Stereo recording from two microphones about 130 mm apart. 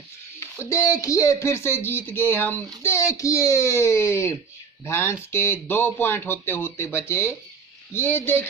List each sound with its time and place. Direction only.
0.7 s speech: 25° left (ahead or behind)